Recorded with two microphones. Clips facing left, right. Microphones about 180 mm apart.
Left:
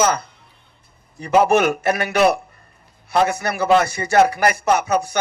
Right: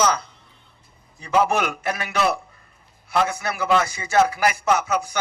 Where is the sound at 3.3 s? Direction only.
70° left (ahead or behind).